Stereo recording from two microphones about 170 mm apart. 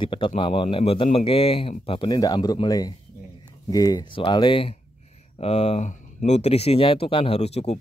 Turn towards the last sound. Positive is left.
turn(degrees=40)  # may be behind; listen again after turning